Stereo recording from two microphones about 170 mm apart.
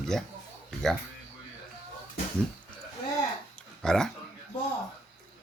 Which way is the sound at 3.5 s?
5° left (ahead or behind).